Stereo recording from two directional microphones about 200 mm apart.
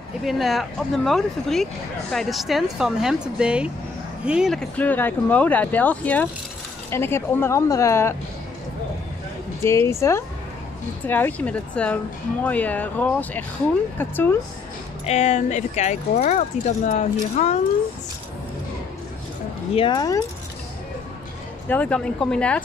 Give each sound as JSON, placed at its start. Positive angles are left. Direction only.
{"t": 0.2, "sound": "speech", "side_deg": 0}
{"t": 9.7, "sound": "speech", "side_deg": 15}
{"t": 15.0, "sound": "speech", "side_deg": 35}
{"t": 19.7, "sound": "speech", "side_deg": 25}
{"t": 21.6, "sound": "speech", "side_deg": 5}